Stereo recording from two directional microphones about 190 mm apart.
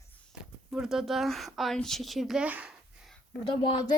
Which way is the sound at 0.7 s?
Centre (ahead or behind).